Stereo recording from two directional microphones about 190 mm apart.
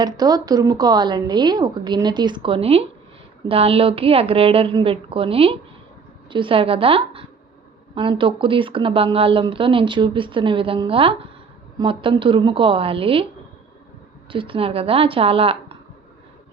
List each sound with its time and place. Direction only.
0.0 s speech: 20° right (ahead or behind)
14.3 s speech: 25° right (ahead or behind)